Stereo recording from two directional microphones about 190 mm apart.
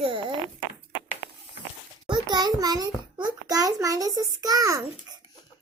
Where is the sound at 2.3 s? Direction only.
20° right (ahead or behind).